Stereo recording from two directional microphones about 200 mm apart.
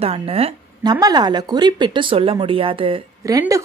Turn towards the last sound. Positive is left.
turn(degrees=-15)  # may be behind; listen again after turning